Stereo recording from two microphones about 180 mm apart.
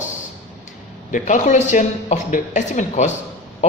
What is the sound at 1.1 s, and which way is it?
A man's voice, 45° left (ahead or behind).